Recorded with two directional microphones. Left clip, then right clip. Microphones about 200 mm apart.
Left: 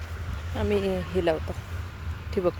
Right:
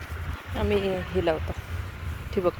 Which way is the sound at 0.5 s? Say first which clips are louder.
Even; 10° left (ahead or behind).